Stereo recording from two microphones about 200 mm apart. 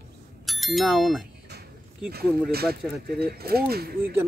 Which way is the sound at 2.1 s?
50° right (ahead or behind).